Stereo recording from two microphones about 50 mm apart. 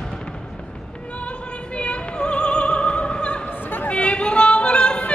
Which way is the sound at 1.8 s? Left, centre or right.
Left.